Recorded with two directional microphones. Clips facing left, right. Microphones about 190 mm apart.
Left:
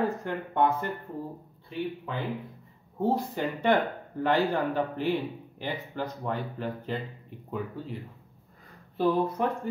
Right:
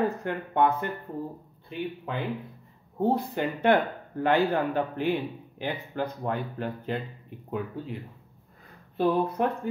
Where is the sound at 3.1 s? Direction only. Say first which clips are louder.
Right 1 dB; 60° right (ahead or behind).